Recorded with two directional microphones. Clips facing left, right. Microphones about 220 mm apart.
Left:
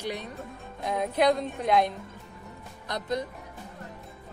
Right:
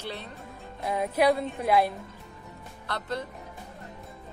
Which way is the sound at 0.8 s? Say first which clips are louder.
Even; 5° right (ahead or behind).